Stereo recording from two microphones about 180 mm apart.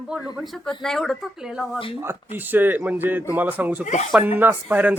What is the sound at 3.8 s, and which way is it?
Speech, 40° left (ahead or behind).